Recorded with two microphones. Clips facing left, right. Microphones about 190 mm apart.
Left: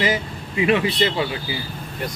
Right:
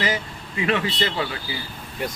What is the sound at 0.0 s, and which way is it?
Speech, 20° left (ahead or behind).